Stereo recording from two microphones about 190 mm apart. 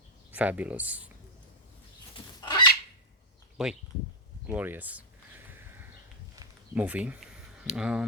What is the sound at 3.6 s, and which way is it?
Speech, 5° right (ahead or behind).